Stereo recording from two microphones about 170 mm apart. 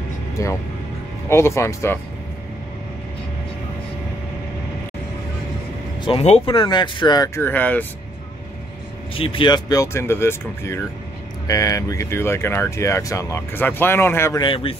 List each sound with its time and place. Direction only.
0.4 s speech: 20° left (ahead or behind)
6.0 s speech: 35° left (ahead or behind)
7.4 s speech: 10° left (ahead or behind)
9.1 s speech: 30° left (ahead or behind); by 14.4 s 15° left (ahead or behind)
14.4 s speech: 30° left (ahead or behind)